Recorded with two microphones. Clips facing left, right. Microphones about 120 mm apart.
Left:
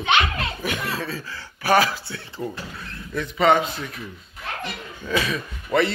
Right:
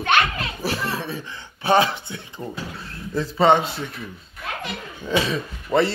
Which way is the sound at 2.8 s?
30° right (ahead or behind).